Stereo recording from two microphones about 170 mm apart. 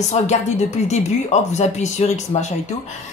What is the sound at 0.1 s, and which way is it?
A woman's voice, 40° left (ahead or behind).